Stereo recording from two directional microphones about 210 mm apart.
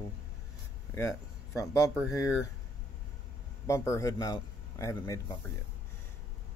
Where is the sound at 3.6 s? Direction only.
15° left (ahead or behind).